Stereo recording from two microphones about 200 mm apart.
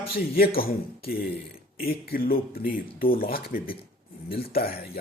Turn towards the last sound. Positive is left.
turn(degrees=50)  # may be behind; listen again after turning